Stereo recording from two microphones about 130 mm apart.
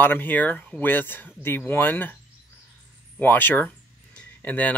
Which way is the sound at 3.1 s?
15° left (ahead or behind).